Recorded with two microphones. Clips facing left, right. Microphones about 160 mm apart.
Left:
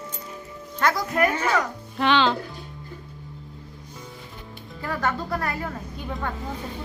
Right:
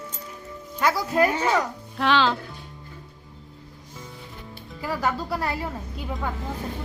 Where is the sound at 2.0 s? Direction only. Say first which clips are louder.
Left 1 dB; centre (ahead or behind).